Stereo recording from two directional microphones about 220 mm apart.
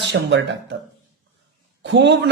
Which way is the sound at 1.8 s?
50° right (ahead or behind).